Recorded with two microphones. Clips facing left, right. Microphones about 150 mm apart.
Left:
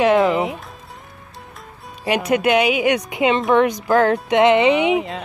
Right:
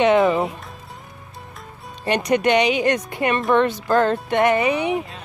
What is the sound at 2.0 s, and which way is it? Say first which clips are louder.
Speech: left 1 dB; 5° left (ahead or behind).